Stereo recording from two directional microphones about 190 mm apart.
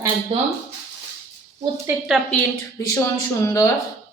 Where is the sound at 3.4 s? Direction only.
15° left (ahead or behind).